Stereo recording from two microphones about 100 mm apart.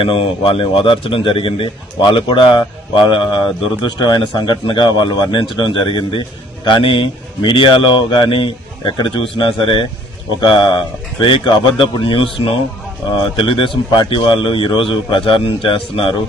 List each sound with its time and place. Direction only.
0.0 s a man's voice: 65° left (ahead or behind)